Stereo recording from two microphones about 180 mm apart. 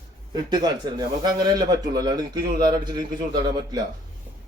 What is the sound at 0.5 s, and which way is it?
Speech, 25° right (ahead or behind).